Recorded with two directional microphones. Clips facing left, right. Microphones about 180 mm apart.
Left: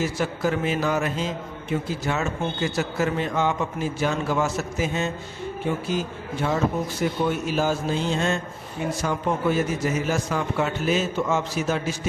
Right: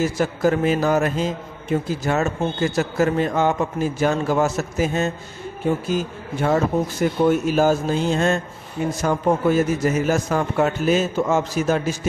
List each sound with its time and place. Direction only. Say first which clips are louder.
0.0 s a man's voice: right 5 dB; 45° right (ahead or behind)